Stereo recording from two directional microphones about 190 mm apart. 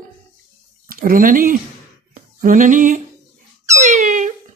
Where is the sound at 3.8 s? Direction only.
45° right (ahead or behind).